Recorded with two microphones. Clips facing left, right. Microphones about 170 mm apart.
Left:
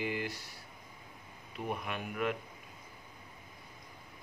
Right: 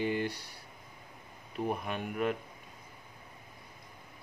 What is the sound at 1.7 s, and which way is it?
Speech, 35° right (ahead or behind).